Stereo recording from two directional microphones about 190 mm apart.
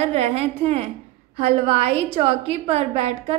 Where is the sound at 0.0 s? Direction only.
35° right (ahead or behind).